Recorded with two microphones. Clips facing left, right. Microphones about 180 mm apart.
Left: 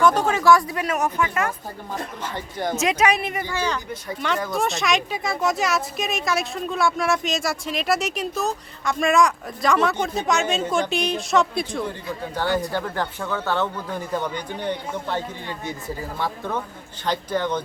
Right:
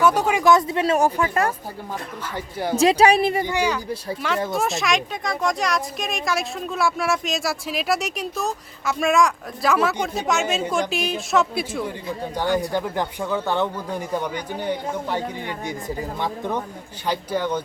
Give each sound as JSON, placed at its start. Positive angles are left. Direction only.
{"t": 0.0, "sound": "speech", "side_deg": -10}
{"t": 2.3, "sound": "speech", "side_deg": -10}
{"t": 2.7, "sound": "speech", "side_deg": -30}
{"t": 3.4, "sound": "speech", "side_deg": -15}
{"t": 4.5, "sound": "speech", "side_deg": 0}